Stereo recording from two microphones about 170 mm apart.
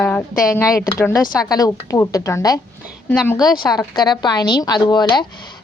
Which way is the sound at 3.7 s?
25° left (ahead or behind).